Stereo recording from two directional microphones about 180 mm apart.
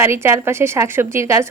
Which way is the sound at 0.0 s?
15° right (ahead or behind).